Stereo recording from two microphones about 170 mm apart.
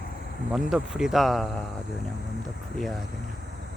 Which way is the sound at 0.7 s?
5° right (ahead or behind).